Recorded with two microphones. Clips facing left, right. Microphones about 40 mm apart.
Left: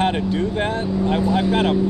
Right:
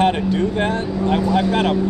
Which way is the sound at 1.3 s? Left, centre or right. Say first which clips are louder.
Right 1 dB; left.